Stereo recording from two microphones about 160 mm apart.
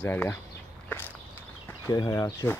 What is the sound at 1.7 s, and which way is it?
Speech, 20° left (ahead or behind).